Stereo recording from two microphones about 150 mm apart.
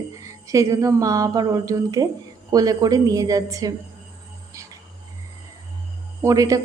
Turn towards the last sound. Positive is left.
turn(degrees=-20)  # may be behind; listen again after turning